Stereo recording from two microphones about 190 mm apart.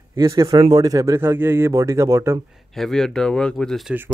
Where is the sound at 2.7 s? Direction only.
Centre (ahead or behind).